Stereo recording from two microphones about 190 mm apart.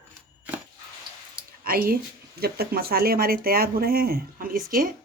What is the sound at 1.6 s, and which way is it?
Speech, 50° right (ahead or behind).